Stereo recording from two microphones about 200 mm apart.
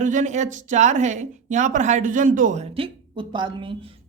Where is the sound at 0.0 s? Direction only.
40° right (ahead or behind).